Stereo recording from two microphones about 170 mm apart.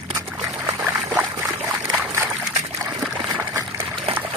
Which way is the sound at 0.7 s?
10° right (ahead or behind).